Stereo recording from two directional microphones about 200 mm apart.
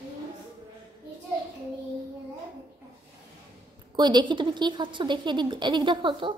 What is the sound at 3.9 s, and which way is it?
A woman's voice, 20° right (ahead or behind).